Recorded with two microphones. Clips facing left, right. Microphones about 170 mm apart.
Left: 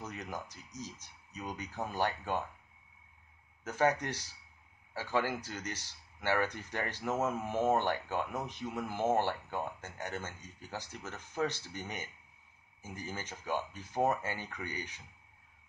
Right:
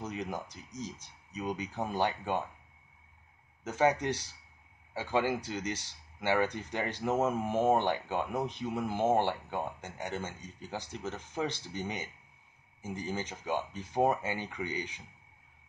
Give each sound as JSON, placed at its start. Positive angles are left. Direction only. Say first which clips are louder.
{"t": 0.1, "sound": "speech", "louder": "right 5 dB", "side_deg": -15}
{"t": 3.6, "sound": "speech", "louder": "right 3 dB", "side_deg": -15}
{"t": 11.1, "sound": "speech", "louder": "left 2 dB", "side_deg": -10}